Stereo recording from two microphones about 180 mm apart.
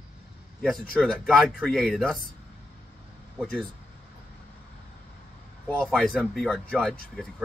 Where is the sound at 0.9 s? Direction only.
5° left (ahead or behind).